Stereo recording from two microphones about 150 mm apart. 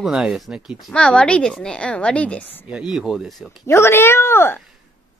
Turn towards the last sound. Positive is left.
turn(degrees=15)  # may be behind; listen again after turning